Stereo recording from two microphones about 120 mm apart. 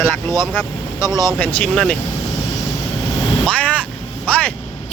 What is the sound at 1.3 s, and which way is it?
Speech, 10° left (ahead or behind).